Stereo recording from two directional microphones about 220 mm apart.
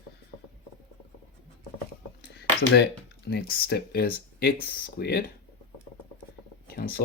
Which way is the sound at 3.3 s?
45° left (ahead or behind).